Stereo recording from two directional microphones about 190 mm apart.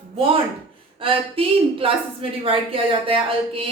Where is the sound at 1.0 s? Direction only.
30° right (ahead or behind).